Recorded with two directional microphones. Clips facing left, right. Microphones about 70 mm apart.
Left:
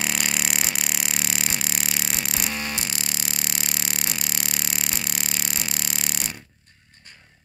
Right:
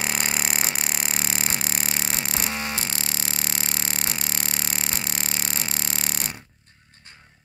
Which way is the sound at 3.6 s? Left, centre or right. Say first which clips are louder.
Even; right.